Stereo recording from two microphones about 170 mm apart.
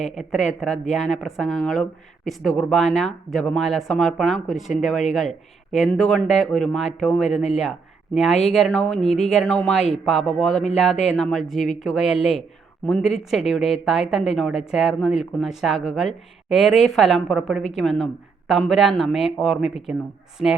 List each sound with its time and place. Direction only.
0.0 s speech: centre (ahead or behind)